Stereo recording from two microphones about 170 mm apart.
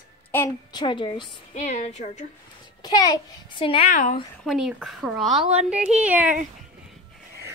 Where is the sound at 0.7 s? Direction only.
30° left (ahead or behind).